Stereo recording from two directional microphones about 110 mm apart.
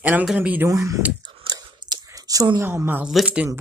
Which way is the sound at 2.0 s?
30° right (ahead or behind).